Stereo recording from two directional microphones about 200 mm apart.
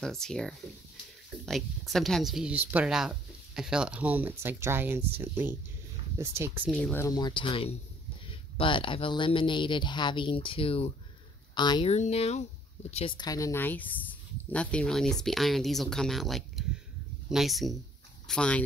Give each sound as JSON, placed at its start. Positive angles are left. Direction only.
{"t": 0.0, "sound": "speech", "side_deg": 5}
{"t": 6.7, "sound": "speech", "side_deg": 10}
{"t": 11.9, "sound": "speech", "side_deg": 30}